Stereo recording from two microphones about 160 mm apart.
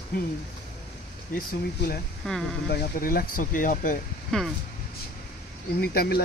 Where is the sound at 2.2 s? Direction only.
Centre (ahead or behind).